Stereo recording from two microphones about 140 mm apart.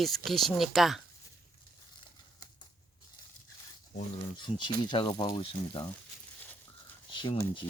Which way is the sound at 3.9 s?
50° left (ahead or behind).